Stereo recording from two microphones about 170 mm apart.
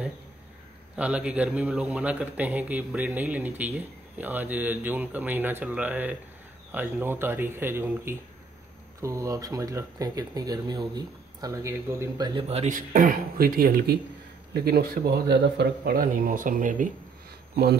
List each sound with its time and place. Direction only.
0.9 s a man's voice: 5° right (ahead or behind)
12.4 s a man's voice: 35° right (ahead or behind); by 15.9 s 80° right
15.9 s speech: 55° right (ahead or behind)